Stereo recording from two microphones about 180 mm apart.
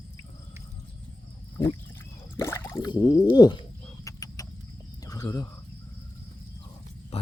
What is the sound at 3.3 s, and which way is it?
Speech, 25° left (ahead or behind).